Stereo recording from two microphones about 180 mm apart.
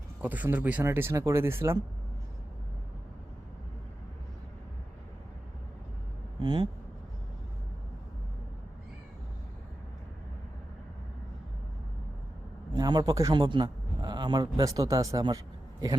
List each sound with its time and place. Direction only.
0.2 s speech: 10° right (ahead or behind)
6.4 s speech: 25° right (ahead or behind)
12.7 s a man's voice: 20° right (ahead or behind)